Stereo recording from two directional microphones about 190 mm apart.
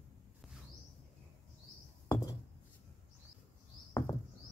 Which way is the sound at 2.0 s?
15° left (ahead or behind).